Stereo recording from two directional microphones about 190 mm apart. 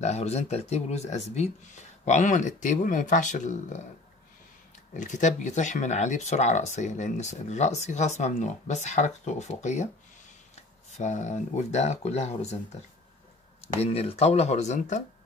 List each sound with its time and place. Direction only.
0.0 s speech: 35° left (ahead or behind)
4.9 s speech: 40° left (ahead or behind)
13.7 s speech: 35° left (ahead or behind)